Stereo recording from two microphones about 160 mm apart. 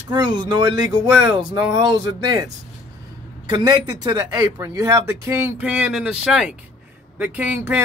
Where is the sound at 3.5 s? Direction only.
25° right (ahead or behind).